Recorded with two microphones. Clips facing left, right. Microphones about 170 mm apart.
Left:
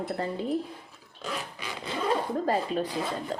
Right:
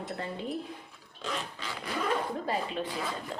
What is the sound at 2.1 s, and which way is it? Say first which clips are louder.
Speech: left 6 dB; 40° left (ahead or behind).